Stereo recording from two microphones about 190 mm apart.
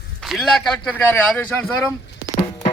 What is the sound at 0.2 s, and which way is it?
A man's voice, centre (ahead or behind).